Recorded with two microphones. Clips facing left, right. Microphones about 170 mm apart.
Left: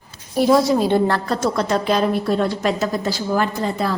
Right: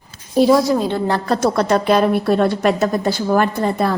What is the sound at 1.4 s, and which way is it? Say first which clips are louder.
A woman's voice: right 4 dB; 60° right (ahead or behind).